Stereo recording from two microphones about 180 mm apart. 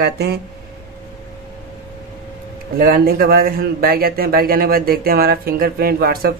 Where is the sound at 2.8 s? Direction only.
55° right (ahead or behind).